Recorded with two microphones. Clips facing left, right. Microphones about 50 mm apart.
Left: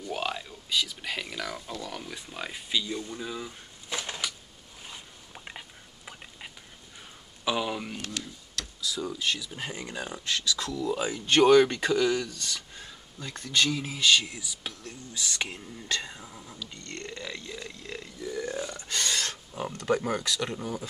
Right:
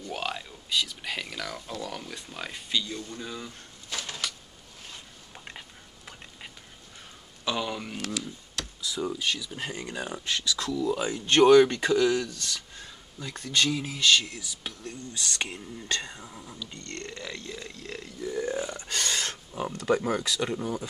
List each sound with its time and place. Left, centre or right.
0.0 s speech: centre
3.9 s a sound: centre
4.8 s a sound: centre
7.4 s a sound: centre
8.5 s a sound: right
9.0 s speech: centre
9.9 s speech: centre
10.2 s burping: centre
10.6 s speech: centre
16.3 s speech: centre
16.8 s speech: centre
18.3 s burping: centre
18.9 s speech: centre